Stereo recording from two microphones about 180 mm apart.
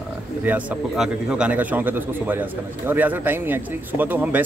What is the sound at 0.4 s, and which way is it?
Speech, 10° right (ahead or behind).